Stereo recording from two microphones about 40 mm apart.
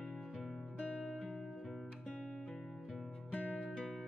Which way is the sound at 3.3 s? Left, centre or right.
Left.